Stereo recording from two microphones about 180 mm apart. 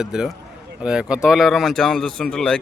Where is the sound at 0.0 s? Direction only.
5° right (ahead or behind).